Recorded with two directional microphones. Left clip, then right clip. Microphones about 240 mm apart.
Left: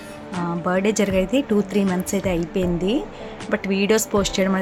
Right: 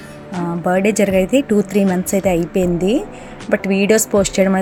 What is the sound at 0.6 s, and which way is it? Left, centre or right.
A woman's voice, centre.